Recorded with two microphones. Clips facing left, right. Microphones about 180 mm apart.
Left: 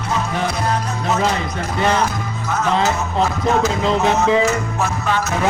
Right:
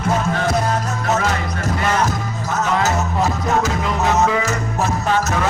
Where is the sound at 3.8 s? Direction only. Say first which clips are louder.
Left 1 dB; 25° left (ahead or behind).